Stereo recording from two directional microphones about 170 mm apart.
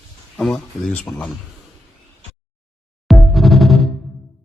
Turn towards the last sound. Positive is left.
turn(degrees=0)  # may be behind; listen again after turning